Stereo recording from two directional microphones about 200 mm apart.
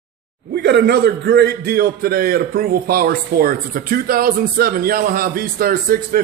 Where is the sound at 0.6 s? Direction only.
60° right (ahead or behind).